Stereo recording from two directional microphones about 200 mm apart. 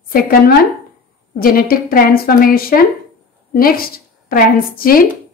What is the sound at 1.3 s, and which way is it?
A woman's voice, 45° left (ahead or behind).